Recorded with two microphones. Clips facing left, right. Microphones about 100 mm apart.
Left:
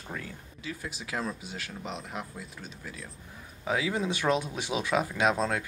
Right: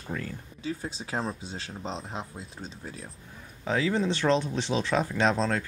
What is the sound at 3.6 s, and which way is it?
Speech, 10° left (ahead or behind).